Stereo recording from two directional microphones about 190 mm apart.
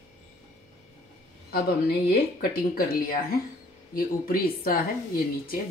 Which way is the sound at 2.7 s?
50° left (ahead or behind).